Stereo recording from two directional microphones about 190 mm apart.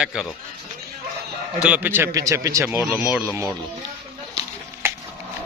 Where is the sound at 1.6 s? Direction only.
10° right (ahead or behind).